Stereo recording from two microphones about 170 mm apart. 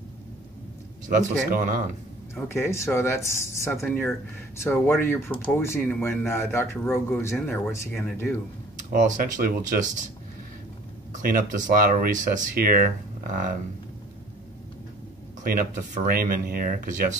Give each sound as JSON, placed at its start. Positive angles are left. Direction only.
{"t": 1.0, "sound": "a man's voice", "side_deg": -50}
{"t": 2.4, "sound": "speech", "side_deg": 15}
{"t": 8.9, "sound": "a man's voice", "side_deg": -50}
{"t": 11.2, "sound": "speech", "side_deg": -50}
{"t": 15.4, "sound": "speech", "side_deg": -55}